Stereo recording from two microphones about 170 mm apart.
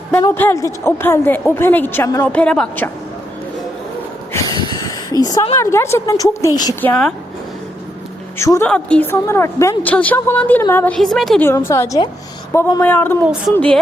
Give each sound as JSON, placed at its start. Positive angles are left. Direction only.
{"t": 0.2, "sound": "a woman's voice", "side_deg": 15}
{"t": 4.3, "sound": "a sound", "side_deg": 25}
{"t": 5.2, "sound": "a woman's voice", "side_deg": 20}
{"t": 6.8, "sound": "a woman's voice", "side_deg": 5}
{"t": 8.4, "sound": "a woman's voice", "side_deg": 15}
{"t": 10.9, "sound": "a woman's voice", "side_deg": 0}
{"t": 11.4, "sound": "a woman's voice", "side_deg": 15}
{"t": 13.2, "sound": "speech", "side_deg": -5}
{"t": 13.5, "sound": "a woman's voice", "side_deg": 10}